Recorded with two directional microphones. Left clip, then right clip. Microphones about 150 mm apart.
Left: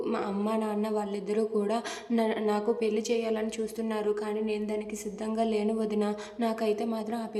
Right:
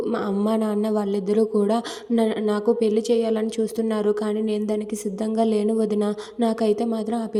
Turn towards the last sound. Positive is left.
turn(degrees=-40)  # may be behind; listen again after turning